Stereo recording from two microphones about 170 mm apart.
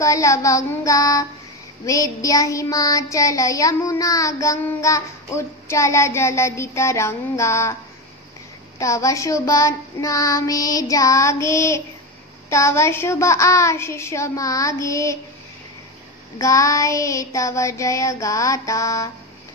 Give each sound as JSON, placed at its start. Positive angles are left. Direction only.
{"t": 0.0, "sound": "child singing", "side_deg": 20}
{"t": 8.7, "sound": "child singing", "side_deg": 20}
{"t": 16.3, "sound": "child singing", "side_deg": 20}